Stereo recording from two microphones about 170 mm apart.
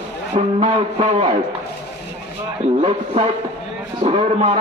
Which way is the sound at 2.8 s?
35° right (ahead or behind).